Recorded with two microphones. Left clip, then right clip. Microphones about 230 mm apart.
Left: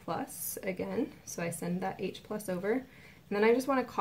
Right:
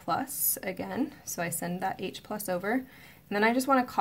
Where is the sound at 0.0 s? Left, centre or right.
Right.